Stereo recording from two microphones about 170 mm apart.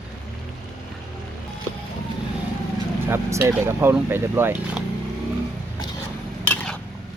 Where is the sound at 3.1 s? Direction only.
15° right (ahead or behind).